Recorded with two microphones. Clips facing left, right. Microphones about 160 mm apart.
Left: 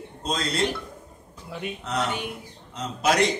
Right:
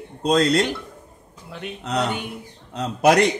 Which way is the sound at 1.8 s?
65° right (ahead or behind).